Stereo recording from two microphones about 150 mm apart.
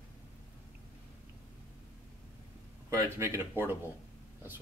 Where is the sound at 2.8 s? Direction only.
20° right (ahead or behind).